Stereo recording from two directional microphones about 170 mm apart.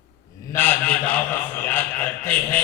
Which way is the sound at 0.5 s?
10° left (ahead or behind).